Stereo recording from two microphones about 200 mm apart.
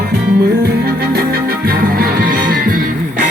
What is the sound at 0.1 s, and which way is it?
Music, 55° right (ahead or behind).